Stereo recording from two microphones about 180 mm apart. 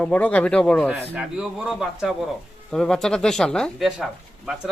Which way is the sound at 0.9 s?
5° right (ahead or behind).